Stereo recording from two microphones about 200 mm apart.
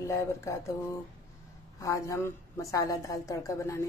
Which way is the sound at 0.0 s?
15° left (ahead or behind).